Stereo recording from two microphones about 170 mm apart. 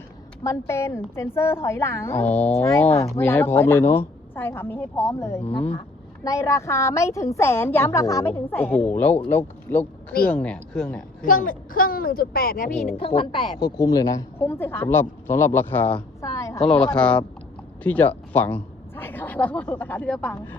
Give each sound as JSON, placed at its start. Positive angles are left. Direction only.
{"t": 0.4, "sound": "a woman's voice", "side_deg": 15}
{"t": 11.2, "sound": "a woman's voice", "side_deg": 55}
{"t": 13.0, "sound": "a woman's voice", "side_deg": 30}
{"t": 16.0, "sound": "a sound", "side_deg": 20}
{"t": 16.6, "sound": "a woman's voice", "side_deg": 5}